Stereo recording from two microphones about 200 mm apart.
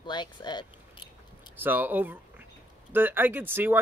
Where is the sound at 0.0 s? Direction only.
20° left (ahead or behind).